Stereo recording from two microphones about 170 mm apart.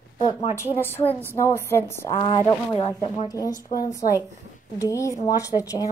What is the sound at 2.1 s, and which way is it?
Speech, 25° left (ahead or behind).